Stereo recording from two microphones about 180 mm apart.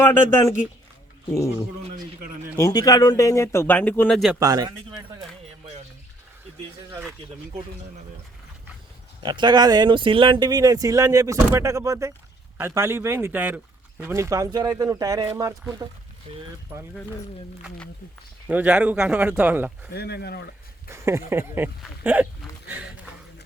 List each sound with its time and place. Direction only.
0.0 s speech: 15° left (ahead or behind)
2.6 s speech: 20° left (ahead or behind); by 4.4 s centre (ahead or behind)
4.4 s speech: 20° right (ahead or behind)
9.2 s speech: 25° right (ahead or behind)
16.3 s speech: 30° right (ahead or behind)
18.4 s speech: 10° right (ahead or behind)
19.9 s speech: 65° left (ahead or behind)
20.9 s speech: 15° right (ahead or behind)
21.8 s hiccup: 10° right (ahead or behind)